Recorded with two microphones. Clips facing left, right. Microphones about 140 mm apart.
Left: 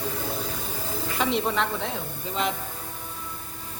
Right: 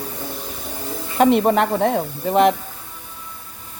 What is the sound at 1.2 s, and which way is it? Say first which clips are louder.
Speech: right 11 dB; 55° right (ahead or behind).